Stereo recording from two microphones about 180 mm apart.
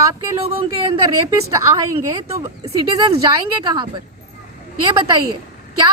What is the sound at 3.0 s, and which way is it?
A woman's voice, 20° right (ahead or behind).